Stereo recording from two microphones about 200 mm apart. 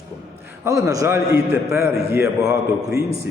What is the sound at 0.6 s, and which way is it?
A man's voice, 15° right (ahead or behind).